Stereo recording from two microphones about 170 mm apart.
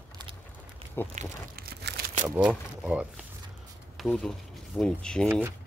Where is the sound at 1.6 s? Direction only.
65° right (ahead or behind).